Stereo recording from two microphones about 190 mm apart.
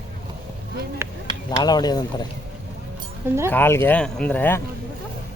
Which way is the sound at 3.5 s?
10° left (ahead or behind).